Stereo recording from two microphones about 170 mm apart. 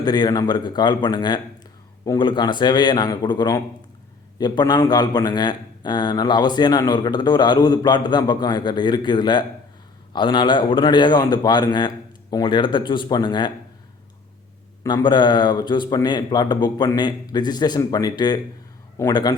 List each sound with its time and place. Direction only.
0.0 s speech: 25° left (ahead or behind)
14.8 s speech: 25° left (ahead or behind)